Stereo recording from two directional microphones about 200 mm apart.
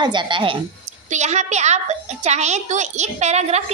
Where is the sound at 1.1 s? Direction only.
35° right (ahead or behind).